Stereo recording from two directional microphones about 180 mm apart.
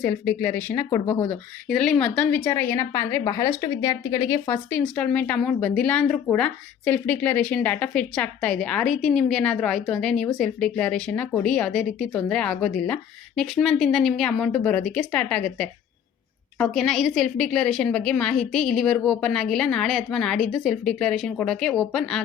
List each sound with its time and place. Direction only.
0.0 s a woman's voice: 10° left (ahead or behind)
1.6 s a woman's voice: 5° left (ahead or behind)